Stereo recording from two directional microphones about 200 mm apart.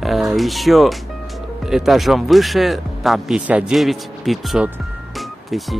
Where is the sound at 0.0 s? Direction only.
Centre (ahead or behind).